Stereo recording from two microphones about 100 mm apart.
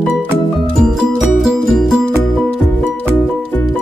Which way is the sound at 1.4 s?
Centre (ahead or behind).